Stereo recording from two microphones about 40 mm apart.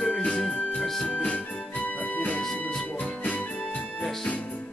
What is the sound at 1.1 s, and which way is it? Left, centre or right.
Music, left.